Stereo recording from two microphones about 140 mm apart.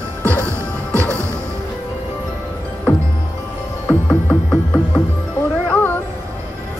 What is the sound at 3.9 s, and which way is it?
Music, 10° left (ahead or behind).